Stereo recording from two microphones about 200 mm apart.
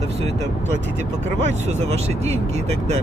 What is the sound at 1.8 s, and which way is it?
Speech, 35° right (ahead or behind).